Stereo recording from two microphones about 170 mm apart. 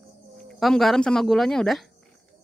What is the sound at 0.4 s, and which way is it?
Speech, centre (ahead or behind).